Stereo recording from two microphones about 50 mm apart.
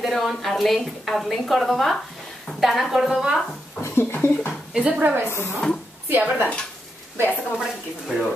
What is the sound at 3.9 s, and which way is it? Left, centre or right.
Speech, left.